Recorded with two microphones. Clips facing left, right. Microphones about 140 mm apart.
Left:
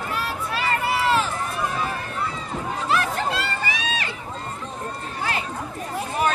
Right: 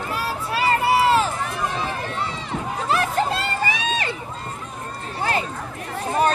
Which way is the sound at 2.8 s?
40° right (ahead or behind).